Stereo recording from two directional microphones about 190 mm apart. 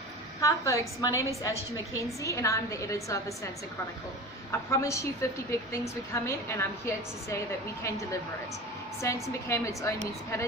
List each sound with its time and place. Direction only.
0.4 s a woman's voice: 15° left (ahead or behind)
2.2 s a woman's voice: 15° left (ahead or behind)
4.5 s a woman's voice: 15° left (ahead or behind)